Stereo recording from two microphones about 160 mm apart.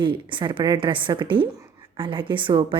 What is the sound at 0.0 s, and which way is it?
A woman's voice, 30° right (ahead or behind).